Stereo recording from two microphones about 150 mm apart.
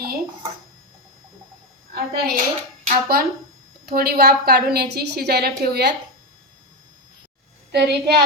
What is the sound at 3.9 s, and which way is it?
A woman's voice, 90° right.